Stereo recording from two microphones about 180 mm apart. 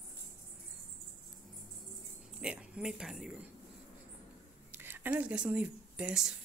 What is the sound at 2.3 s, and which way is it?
Speech, 5° right (ahead or behind).